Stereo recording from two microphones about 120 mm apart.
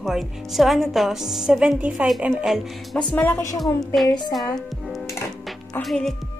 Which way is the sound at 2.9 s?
10° left (ahead or behind).